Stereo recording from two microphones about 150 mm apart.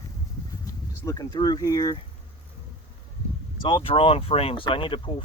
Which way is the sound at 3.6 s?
35° left (ahead or behind).